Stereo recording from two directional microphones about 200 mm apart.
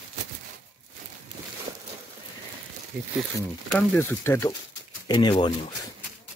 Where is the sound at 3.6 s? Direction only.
5° left (ahead or behind); by 5.5 s 20° left (ahead or behind).